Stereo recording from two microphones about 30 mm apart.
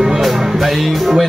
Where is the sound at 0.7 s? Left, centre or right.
Centre.